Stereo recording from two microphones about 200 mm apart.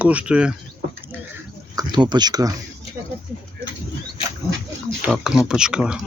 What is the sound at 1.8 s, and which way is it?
Speech, 20° right (ahead or behind).